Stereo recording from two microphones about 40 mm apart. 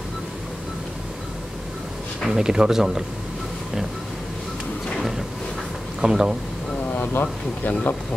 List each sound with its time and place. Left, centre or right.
2.2 s speech: centre
5.9 s speech: centre
6.9 s speech: left